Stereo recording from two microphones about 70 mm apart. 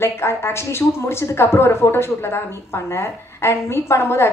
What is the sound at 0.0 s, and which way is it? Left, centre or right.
A woman's voice, left.